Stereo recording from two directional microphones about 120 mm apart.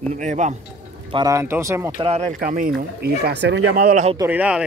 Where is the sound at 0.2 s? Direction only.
80° right.